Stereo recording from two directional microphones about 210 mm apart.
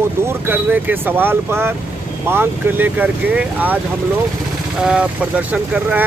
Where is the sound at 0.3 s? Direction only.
10° right (ahead or behind).